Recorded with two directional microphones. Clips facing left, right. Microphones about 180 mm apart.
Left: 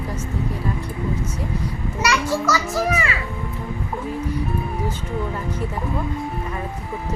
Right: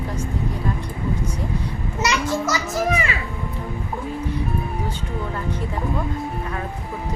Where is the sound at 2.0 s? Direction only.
20° right (ahead or behind).